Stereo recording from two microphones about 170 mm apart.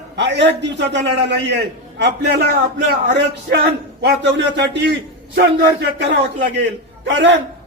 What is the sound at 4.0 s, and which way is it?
A man's voice, 85° right.